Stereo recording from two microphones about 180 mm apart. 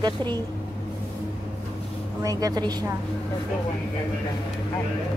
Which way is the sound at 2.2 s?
20° right (ahead or behind).